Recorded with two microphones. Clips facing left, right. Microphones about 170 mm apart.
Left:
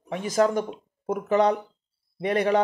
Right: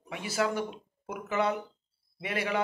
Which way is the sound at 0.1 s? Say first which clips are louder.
Left 8 dB; 40° left (ahead or behind).